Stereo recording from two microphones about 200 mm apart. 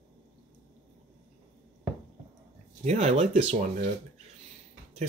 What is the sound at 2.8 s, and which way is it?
Speech, 35° right (ahead or behind).